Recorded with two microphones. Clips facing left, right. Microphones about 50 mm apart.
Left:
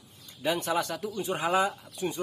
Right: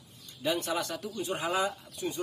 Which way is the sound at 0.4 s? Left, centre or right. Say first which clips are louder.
Left 3 dB; left.